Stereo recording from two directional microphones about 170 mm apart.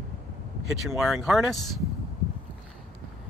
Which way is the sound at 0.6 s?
Centre (ahead or behind).